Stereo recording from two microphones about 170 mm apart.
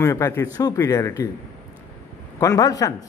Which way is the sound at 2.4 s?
20° left (ahead or behind).